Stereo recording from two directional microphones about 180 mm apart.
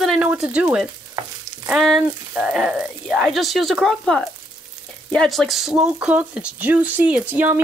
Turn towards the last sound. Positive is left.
turn(degrees=-10)  # may be behind; listen again after turning